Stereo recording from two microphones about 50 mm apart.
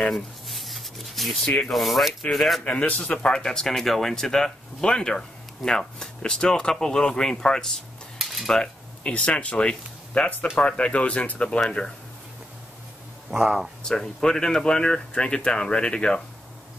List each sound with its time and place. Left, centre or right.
0.1 s a sound: centre
1.7 s speech: centre
2.6 s speech: left
8.2 s cutlery: centre
9.0 s speech: left
13.3 s speech: centre
13.8 s speech: centre